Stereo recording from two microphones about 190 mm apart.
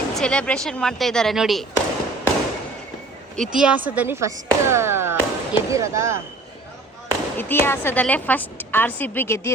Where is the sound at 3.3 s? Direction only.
Centre (ahead or behind).